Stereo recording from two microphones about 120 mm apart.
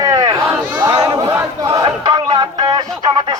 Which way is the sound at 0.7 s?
35° right (ahead or behind).